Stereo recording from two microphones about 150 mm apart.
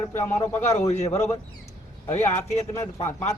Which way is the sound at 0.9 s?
45° left (ahead or behind).